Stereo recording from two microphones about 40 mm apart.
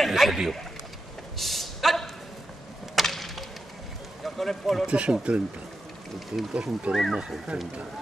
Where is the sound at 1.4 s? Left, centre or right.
Centre.